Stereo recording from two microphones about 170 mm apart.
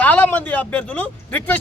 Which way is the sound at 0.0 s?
10° left (ahead or behind).